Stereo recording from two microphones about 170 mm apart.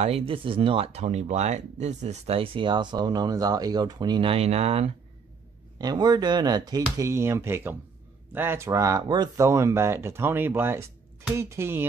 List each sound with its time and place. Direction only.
0.0 s speech: 35° right (ahead or behind)
5.8 s speech: 25° right (ahead or behind)